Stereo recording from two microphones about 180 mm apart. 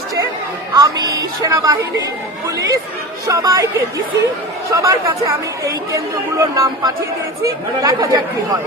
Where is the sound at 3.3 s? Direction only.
20° right (ahead or behind).